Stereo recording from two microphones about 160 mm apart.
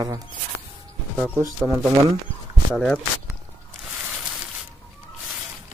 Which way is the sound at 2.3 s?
35° left (ahead or behind).